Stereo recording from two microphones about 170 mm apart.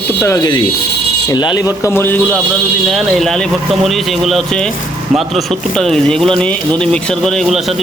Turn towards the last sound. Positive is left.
turn(degrees=0)  # may be behind; listen again after turning